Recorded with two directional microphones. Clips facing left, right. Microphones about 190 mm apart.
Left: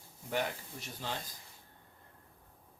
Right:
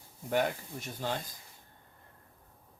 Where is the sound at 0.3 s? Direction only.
50° right (ahead or behind).